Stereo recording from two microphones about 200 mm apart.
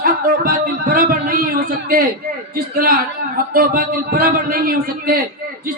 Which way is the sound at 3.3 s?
45° right (ahead or behind).